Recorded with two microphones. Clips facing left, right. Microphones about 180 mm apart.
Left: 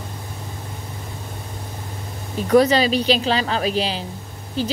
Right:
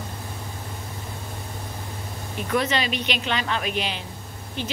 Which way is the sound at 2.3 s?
35° left (ahead or behind).